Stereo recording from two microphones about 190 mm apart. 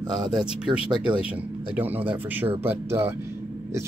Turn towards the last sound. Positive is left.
turn(degrees=-15)  # may be behind; listen again after turning